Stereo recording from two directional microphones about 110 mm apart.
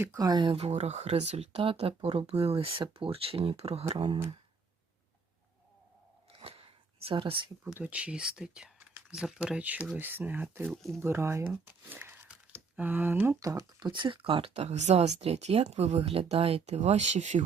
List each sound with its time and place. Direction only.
0.2 s speech: 40° right (ahead or behind)
0.5 s speech: 70° right (ahead or behind)
6.3 s a sound: 55° right (ahead or behind)
7.8 s speech: 10° right (ahead or behind); by 14.5 s 55° right (ahead or behind)
14.5 s speech: 80° right